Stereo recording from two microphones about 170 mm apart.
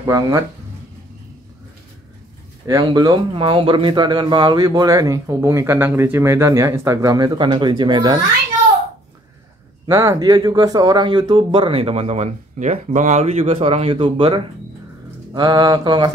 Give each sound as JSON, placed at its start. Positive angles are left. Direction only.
{"t": 0.0, "sound": "speech", "side_deg": -20}
{"t": 2.6, "sound": "speech", "side_deg": -25}
{"t": 9.8, "sound": "speech", "side_deg": -20}